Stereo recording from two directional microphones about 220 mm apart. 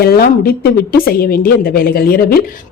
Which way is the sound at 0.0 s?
45° left (ahead or behind).